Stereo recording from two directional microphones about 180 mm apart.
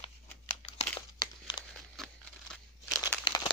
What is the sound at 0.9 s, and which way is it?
Crumpling, 25° left (ahead or behind).